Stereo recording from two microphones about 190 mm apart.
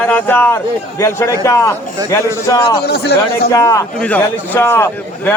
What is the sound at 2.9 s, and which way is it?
Speech, 60° left (ahead or behind).